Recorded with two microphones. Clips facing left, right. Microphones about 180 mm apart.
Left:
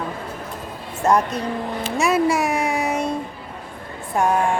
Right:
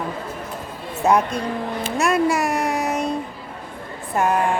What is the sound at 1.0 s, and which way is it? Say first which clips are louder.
Speech: even; 10° right (ahead or behind).